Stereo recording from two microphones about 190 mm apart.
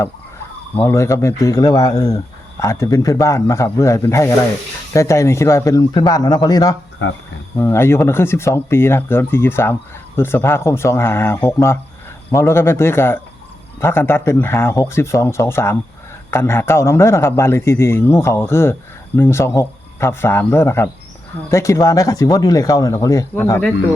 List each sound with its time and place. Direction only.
0.8 s a man's voice: 15° left (ahead or behind)